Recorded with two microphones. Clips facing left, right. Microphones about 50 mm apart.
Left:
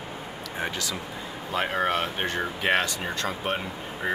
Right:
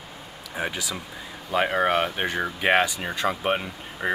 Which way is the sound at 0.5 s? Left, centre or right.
Centre.